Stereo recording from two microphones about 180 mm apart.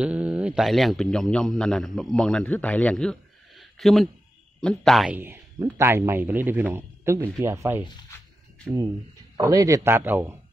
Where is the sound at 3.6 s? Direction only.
Centre (ahead or behind).